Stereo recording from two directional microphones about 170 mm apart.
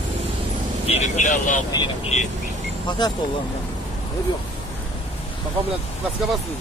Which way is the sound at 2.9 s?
25° left (ahead or behind).